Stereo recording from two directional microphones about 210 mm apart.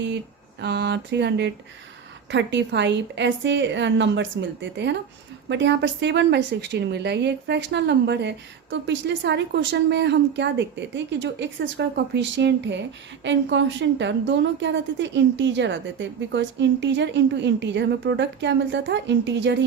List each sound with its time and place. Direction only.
0.6 s a woman's voice: 55° right (ahead or behind)